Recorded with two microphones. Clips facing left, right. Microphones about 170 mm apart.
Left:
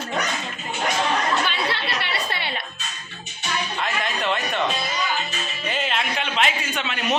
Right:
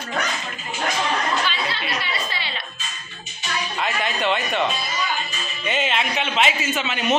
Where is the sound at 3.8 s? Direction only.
Centre (ahead or behind).